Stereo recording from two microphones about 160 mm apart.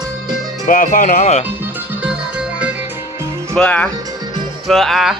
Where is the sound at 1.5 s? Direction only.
10° right (ahead or behind).